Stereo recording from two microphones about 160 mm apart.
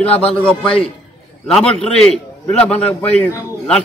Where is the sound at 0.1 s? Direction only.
35° left (ahead or behind).